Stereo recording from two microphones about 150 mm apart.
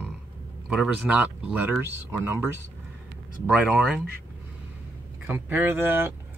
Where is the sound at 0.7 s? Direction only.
5° right (ahead or behind).